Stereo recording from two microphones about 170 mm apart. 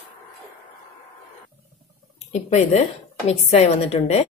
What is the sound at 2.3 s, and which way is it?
A woman's voice, 40° left (ahead or behind).